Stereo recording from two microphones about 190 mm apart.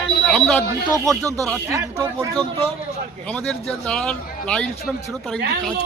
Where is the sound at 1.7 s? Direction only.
15° right (ahead or behind).